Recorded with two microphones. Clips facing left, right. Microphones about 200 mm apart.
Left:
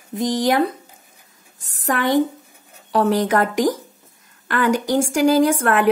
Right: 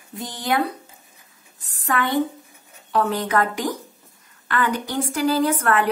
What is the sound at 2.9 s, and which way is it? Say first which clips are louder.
A woman's voice: left 4 dB; 45° left (ahead or behind).